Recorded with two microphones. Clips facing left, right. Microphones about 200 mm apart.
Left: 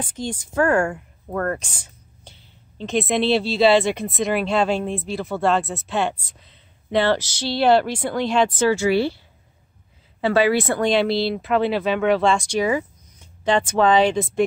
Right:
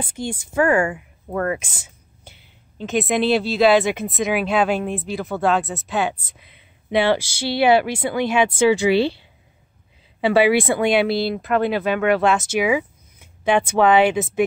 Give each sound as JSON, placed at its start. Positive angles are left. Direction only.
{"t": 0.0, "sound": "speech", "side_deg": -10}
{"t": 10.2, "sound": "speech", "side_deg": -15}